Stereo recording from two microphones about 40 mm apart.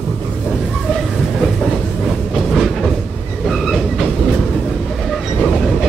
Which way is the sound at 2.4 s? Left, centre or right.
Centre.